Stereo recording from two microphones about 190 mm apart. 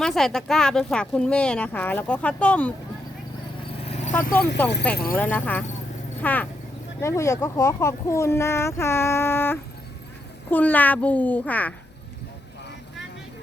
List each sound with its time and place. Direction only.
0.0 s speech: centre (ahead or behind)
3.8 s vehicle: 35° left (ahead or behind)
4.3 s speech: 55° left (ahead or behind)
5.1 s speech: 10° left (ahead or behind)